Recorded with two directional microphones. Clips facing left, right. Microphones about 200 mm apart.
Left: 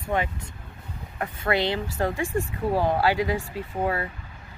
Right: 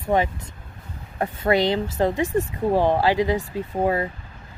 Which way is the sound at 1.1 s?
35° right (ahead or behind).